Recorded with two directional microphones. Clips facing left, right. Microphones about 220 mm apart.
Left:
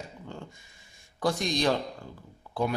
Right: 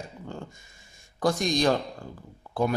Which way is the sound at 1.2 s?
45° right (ahead or behind).